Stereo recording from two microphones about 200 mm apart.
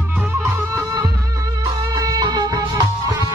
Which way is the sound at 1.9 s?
20° right (ahead or behind).